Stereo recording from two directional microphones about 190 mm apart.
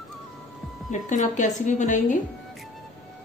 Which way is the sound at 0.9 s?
40° left (ahead or behind).